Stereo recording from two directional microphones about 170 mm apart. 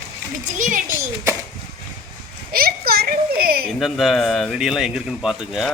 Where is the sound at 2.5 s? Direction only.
60° right (ahead or behind).